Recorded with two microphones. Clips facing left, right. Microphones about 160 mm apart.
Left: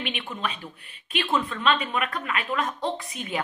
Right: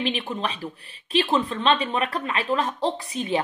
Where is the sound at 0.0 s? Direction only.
35° right (ahead or behind).